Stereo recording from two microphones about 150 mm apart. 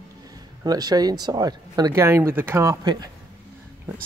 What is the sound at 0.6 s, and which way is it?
Speech, 25° right (ahead or behind).